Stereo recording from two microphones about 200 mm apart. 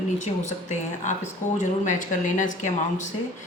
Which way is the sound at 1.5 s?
40° left (ahead or behind).